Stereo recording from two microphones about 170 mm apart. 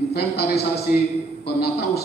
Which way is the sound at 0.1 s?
70° left (ahead or behind).